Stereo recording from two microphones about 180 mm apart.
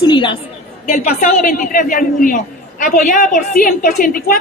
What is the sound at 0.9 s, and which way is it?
A woman's voice, 40° left (ahead or behind).